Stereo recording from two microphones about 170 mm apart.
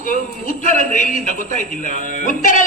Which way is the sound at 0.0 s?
50° left (ahead or behind).